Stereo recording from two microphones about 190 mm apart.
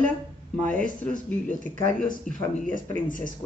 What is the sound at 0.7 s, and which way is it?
Speech, 5° left (ahead or behind).